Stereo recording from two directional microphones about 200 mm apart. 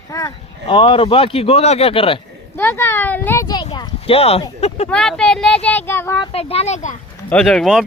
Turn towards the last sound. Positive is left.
turn(degrees=0)  # may be behind; listen again after turning